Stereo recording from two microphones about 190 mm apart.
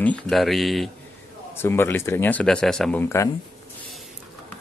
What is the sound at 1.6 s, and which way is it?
Speech, 10° left (ahead or behind).